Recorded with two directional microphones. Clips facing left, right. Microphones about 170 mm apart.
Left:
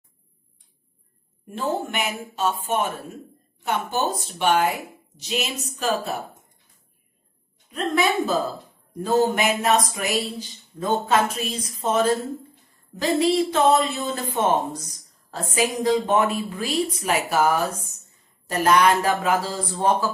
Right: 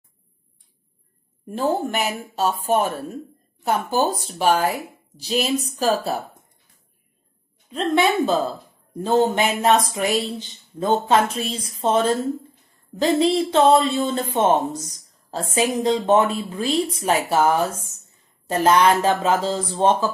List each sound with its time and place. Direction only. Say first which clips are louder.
1.5 s speech: right 4 dB; 35° right (ahead or behind)
7.7 s speech: right 3 dB; 25° right (ahead or behind)